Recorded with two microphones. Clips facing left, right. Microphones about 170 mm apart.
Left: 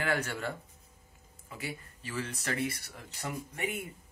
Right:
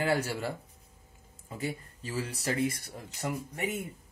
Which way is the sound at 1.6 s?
45° right (ahead or behind).